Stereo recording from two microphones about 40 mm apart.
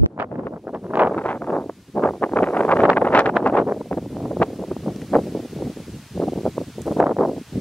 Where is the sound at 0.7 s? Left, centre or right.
Right.